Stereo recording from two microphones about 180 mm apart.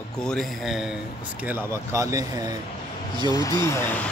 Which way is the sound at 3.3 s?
20° left (ahead or behind).